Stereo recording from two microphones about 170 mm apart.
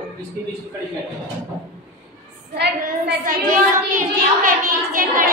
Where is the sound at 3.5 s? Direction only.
50° right (ahead or behind).